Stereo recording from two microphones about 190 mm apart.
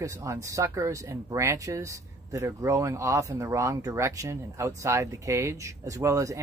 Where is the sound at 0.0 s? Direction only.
15° right (ahead or behind).